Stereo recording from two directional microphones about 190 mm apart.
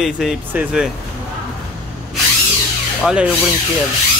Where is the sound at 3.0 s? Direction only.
5° right (ahead or behind).